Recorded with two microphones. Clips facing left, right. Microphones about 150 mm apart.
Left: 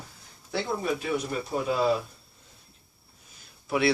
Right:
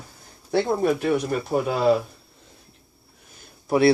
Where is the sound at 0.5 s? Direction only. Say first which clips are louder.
Right 8 dB; 55° right (ahead or behind).